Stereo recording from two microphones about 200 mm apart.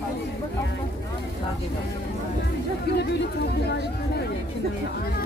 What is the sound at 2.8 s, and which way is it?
Speech, 55° left (ahead or behind).